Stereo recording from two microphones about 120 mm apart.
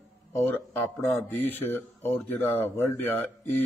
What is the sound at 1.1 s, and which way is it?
Speech, 15° left (ahead or behind).